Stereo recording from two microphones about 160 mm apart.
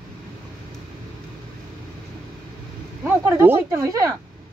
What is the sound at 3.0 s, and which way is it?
Speech, 15° right (ahead or behind).